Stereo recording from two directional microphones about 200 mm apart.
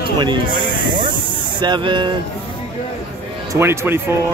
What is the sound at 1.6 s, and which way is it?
Speech, 25° right (ahead or behind).